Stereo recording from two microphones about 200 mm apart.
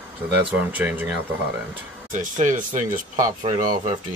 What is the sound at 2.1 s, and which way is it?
Speech, 40° right (ahead or behind).